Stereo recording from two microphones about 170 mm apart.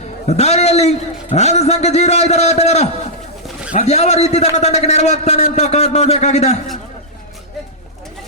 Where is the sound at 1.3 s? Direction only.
40° left (ahead or behind).